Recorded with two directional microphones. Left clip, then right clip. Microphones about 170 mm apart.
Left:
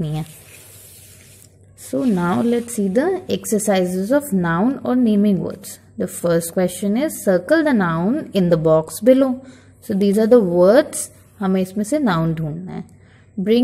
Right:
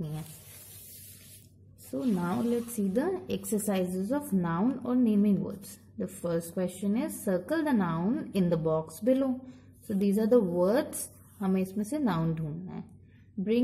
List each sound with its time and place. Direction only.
1.9 s a woman's voice: 20° left (ahead or behind)
13.4 s a woman's voice: 60° left (ahead or behind)